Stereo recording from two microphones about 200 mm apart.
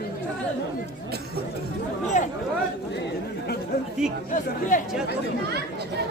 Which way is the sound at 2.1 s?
35° left (ahead or behind).